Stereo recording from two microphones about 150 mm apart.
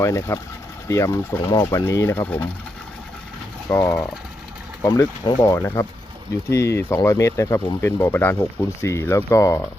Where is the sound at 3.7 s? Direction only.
20° left (ahead or behind).